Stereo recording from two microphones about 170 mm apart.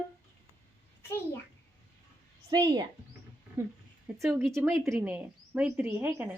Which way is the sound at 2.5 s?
25° right (ahead or behind).